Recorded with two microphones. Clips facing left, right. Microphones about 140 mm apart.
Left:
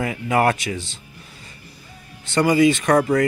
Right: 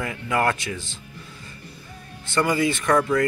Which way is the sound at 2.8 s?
75° left (ahead or behind).